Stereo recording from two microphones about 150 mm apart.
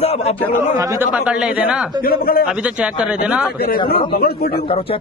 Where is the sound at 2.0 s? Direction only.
80° left.